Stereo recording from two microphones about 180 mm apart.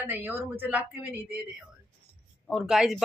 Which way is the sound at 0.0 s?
10° right (ahead or behind).